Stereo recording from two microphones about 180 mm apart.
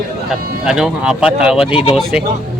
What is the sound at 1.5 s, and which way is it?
Speech, 30° left (ahead or behind).